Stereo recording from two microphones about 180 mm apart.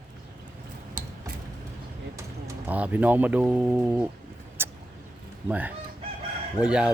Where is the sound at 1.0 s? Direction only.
50° right (ahead or behind).